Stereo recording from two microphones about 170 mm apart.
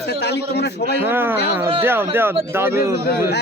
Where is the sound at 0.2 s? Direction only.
80° left.